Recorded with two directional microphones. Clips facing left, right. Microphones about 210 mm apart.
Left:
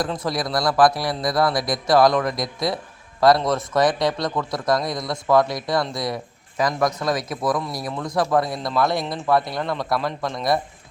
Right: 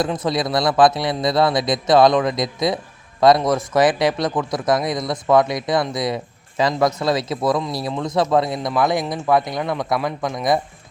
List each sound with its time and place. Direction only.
0.0 s a man's voice: 20° right (ahead or behind)